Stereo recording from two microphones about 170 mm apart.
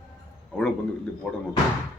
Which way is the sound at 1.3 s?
5° left (ahead or behind).